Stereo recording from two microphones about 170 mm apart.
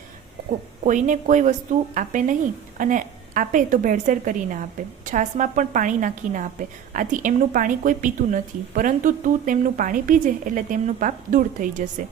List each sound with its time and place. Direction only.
0.9 s a woman's voice: 50° right (ahead or behind)